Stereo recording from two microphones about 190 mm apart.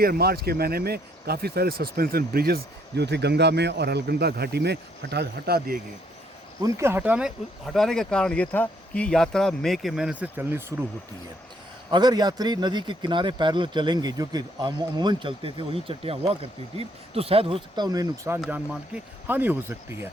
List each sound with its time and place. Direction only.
0.0 s speech: 55° right (ahead or behind)
6.6 s speech: 15° right (ahead or behind)
11.9 s a man's voice: 20° right (ahead or behind)
18.3 s speech: 5° right (ahead or behind)